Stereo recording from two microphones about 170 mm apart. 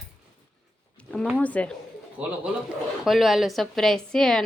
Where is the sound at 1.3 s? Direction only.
10° left (ahead or behind).